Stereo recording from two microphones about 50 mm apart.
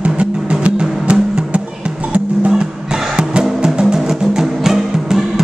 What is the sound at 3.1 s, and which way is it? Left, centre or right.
Music, centre.